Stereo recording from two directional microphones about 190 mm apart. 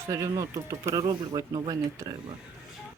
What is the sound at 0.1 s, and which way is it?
Speech, 20° right (ahead or behind).